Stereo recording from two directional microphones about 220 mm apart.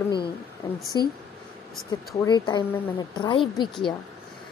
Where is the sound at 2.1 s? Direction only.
20° left (ahead or behind).